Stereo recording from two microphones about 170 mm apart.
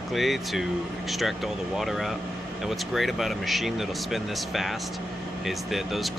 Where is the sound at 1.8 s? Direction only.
Centre (ahead or behind).